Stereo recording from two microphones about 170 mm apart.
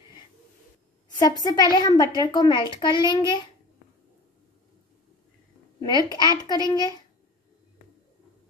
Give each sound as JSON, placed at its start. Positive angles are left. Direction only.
{"t": 1.2, "sound": "a child's voice", "side_deg": 25}
{"t": 5.8, "sound": "a child's voice", "side_deg": 25}